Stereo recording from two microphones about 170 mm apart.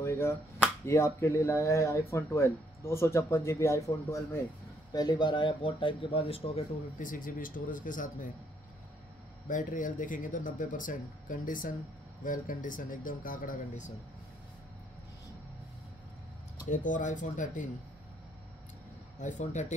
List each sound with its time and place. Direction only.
0.0 s speech: 15° left (ahead or behind); by 6.6 s 35° left (ahead or behind)
7.0 s speech: 55° left (ahead or behind)
9.5 s speech: 50° left (ahead or behind)
16.6 s speech: 50° left (ahead or behind)
19.1 s speech: 45° left (ahead or behind)